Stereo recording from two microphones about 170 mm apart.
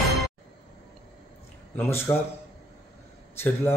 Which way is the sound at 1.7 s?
15° left (ahead or behind).